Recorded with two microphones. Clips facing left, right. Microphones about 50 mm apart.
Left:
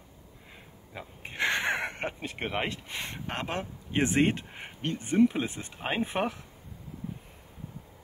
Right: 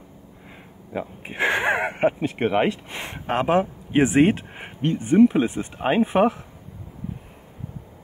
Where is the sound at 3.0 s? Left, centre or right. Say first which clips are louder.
Right 13 dB; right.